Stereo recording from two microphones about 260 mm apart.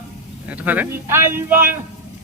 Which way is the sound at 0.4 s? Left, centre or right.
Centre.